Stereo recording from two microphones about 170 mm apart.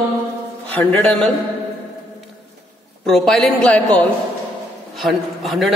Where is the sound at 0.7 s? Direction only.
10° left (ahead or behind).